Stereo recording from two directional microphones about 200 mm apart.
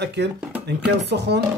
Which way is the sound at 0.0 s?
60° right (ahead or behind).